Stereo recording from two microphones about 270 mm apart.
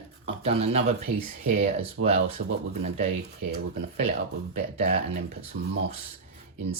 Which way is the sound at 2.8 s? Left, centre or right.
Right.